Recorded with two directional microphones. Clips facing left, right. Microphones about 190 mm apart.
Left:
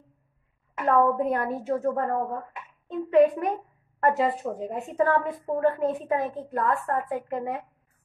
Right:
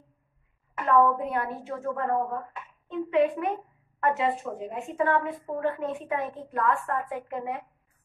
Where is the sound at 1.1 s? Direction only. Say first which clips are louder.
Left 4 dB; 45° left (ahead or behind).